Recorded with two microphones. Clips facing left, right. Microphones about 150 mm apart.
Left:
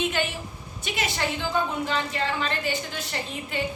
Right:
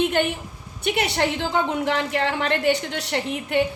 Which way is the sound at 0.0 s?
55° right (ahead or behind).